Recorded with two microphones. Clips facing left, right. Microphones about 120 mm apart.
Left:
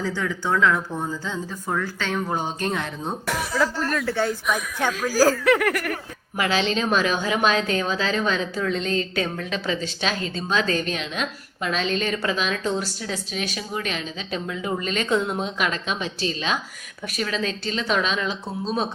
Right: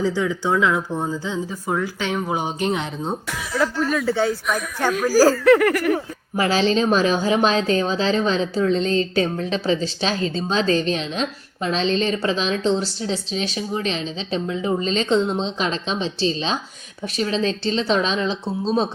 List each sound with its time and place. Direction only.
0.0 s speech: 15° right (ahead or behind)
3.6 s speech: 5° right (ahead or behind)
5.5 s a sound: centre (ahead or behind)
6.3 s a woman's voice: 35° right (ahead or behind)